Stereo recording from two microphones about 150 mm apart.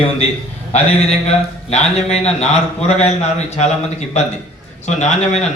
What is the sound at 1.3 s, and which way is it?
A man's voice, 45° left (ahead or behind).